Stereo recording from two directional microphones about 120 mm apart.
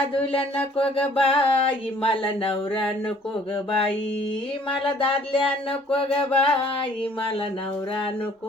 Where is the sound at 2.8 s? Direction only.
5° left (ahead or behind).